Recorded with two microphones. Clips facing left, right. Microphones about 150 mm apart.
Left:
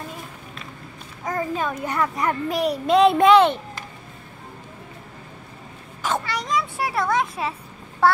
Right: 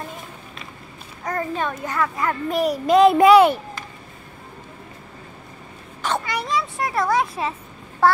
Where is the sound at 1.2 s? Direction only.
5° left (ahead or behind).